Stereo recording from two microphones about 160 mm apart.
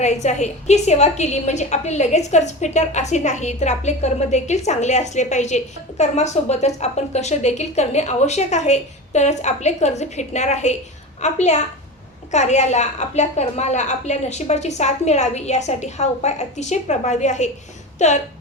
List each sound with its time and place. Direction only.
0.0 s a woman's voice: 45° left (ahead or behind)